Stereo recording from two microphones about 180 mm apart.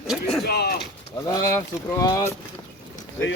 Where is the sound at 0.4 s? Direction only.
60° left (ahead or behind).